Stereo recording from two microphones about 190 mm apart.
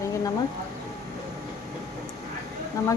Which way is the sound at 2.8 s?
20° left (ahead or behind).